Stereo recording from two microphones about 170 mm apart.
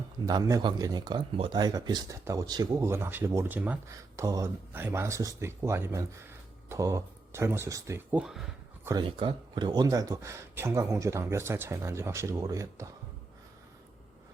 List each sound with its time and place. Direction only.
0.3 s speech: 20° right (ahead or behind); by 8.4 s 5° right (ahead or behind)
8.8 s speech: 15° right (ahead or behind)
9.0 s speech: 30° right (ahead or behind)